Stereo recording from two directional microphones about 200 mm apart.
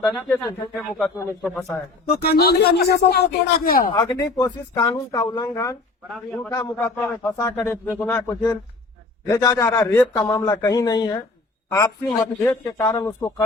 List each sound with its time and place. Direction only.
0.0 s speech: 5° left (ahead or behind)
2.2 s speech: 50° left (ahead or behind)
3.9 s a man's voice: 20° left (ahead or behind)
6.1 s speech: 5° left (ahead or behind)
6.5 s a man's voice: 15° left (ahead or behind)